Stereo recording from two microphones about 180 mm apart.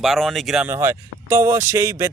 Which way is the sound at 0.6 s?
15° right (ahead or behind).